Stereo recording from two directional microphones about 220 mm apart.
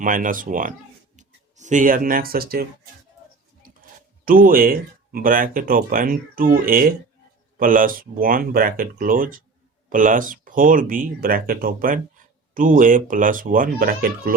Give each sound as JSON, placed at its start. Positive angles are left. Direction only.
{"t": 0.0, "sound": "speech", "side_deg": -40}
{"t": 4.3, "sound": "speech", "side_deg": -40}